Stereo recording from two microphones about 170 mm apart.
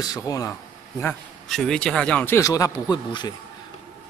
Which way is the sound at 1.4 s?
Centre (ahead or behind).